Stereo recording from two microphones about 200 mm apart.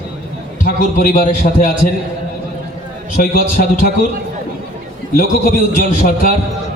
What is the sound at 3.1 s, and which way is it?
Speech, 45° left (ahead or behind).